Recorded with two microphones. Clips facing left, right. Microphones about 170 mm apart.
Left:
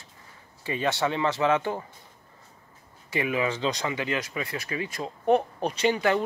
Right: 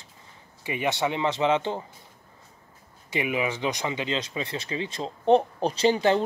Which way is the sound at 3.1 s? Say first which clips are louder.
Even; 15° right (ahead or behind).